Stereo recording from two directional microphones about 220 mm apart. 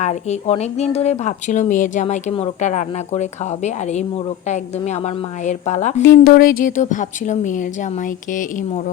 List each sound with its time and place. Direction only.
0.0 s a woman's voice: 30° left (ahead or behind)